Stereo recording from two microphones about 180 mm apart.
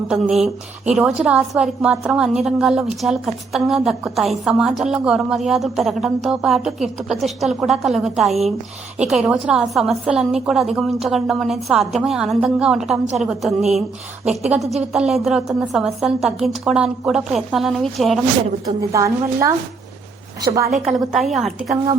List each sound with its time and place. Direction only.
0.1 s a woman's voice: centre (ahead or behind)
14.5 s a woman's voice: 5° right (ahead or behind)
18.8 s a woman's voice: 15° right (ahead or behind)
20.8 s a woman's voice: centre (ahead or behind)